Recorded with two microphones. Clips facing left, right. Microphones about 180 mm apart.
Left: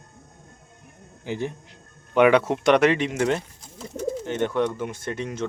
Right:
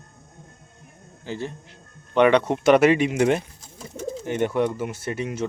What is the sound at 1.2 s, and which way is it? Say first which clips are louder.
Speech: left 2 dB; 15° left (ahead or behind).